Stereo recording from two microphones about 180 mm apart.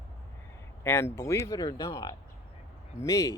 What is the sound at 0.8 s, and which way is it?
Speech, 15° left (ahead or behind).